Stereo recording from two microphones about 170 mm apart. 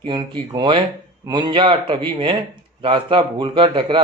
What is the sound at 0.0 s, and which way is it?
A man's voice, 25° right (ahead or behind).